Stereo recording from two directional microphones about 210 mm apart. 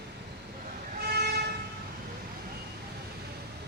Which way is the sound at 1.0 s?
50° right (ahead or behind).